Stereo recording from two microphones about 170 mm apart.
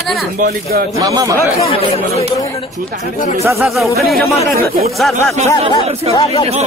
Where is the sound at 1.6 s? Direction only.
35° left (ahead or behind).